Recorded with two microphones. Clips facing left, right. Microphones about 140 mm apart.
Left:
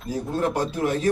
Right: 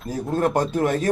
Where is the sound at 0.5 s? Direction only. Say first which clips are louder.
Right 3 dB; 50° right (ahead or behind).